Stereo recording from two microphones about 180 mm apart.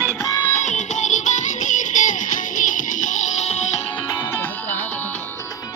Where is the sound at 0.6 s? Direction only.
40° left (ahead or behind).